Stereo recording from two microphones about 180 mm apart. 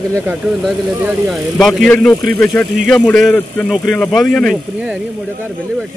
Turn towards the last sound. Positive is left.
turn(degrees=0)  # may be behind; listen again after turning